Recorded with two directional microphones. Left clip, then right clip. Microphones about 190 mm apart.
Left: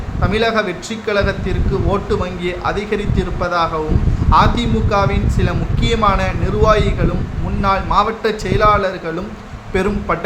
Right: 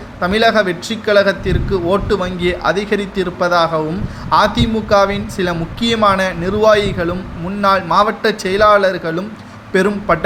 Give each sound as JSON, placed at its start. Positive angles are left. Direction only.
{"t": 0.2, "sound": "speech", "side_deg": -20}